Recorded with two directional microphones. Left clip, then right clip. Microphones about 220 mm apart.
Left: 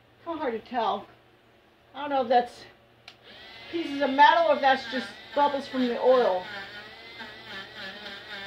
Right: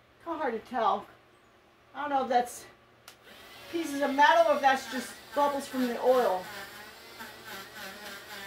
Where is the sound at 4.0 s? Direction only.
10° right (ahead or behind).